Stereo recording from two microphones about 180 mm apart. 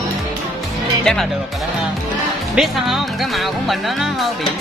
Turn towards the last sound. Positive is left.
turn(degrees=0)  # may be behind; listen again after turning